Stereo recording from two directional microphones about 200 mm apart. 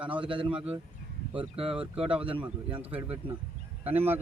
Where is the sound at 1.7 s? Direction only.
5° right (ahead or behind).